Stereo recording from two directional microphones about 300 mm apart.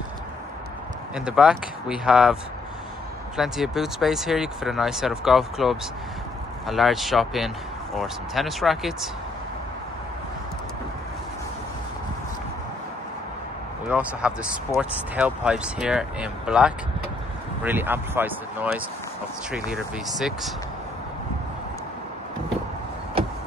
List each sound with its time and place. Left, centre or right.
1.1 s speech: centre
3.3 s speech: centre
13.8 s speech: centre